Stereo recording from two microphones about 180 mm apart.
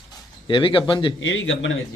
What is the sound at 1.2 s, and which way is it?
Speech, 90° left.